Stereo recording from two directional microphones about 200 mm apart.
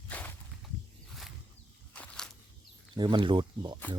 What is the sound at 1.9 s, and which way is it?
Walk, 5° left (ahead or behind).